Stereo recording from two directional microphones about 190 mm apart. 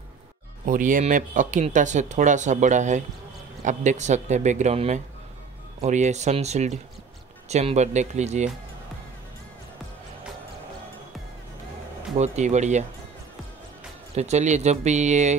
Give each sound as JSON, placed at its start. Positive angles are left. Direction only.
{"t": 0.7, "sound": "speech", "side_deg": -45}
{"t": 12.2, "sound": "speech", "side_deg": -35}
{"t": 14.1, "sound": "speech", "side_deg": -35}